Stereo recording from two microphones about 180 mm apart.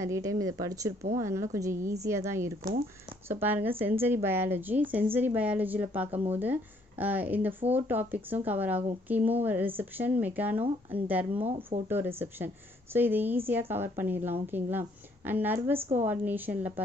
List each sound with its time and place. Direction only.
0.0 s a woman's voice: 15° right (ahead or behind)